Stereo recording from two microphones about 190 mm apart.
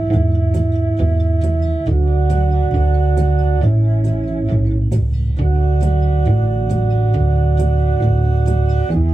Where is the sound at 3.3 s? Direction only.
35° left (ahead or behind).